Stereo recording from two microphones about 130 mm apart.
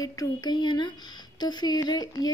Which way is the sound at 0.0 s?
30° left (ahead or behind).